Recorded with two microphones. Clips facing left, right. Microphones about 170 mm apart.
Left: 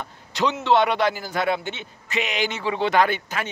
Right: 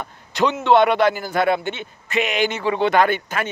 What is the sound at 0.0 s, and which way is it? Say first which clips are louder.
A man's voice: right 4 dB; 55° right (ahead or behind).